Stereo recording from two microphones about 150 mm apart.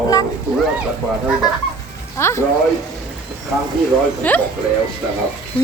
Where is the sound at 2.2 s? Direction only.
15° left (ahead or behind).